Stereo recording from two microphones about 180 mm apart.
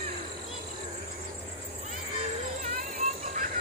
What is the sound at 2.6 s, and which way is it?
Music, 45° right (ahead or behind).